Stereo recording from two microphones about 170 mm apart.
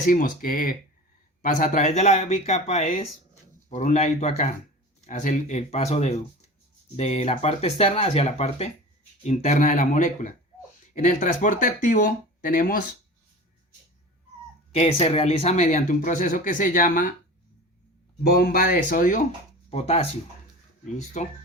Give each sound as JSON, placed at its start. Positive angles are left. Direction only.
{"t": 0.0, "sound": "speech", "side_deg": 55}
{"t": 14.7, "sound": "speech", "side_deg": 35}
{"t": 18.2, "sound": "speech", "side_deg": 65}
{"t": 19.7, "sound": "speech", "side_deg": 35}
{"t": 21.2, "sound": "speech", "side_deg": 45}